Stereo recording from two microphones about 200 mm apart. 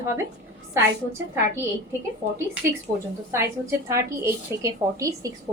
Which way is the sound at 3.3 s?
15° right (ahead or behind).